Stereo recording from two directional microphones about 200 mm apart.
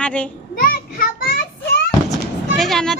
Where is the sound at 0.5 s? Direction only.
45° left (ahead or behind).